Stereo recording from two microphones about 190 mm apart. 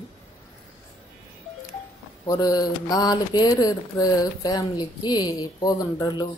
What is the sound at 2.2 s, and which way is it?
Speech, 20° left (ahead or behind).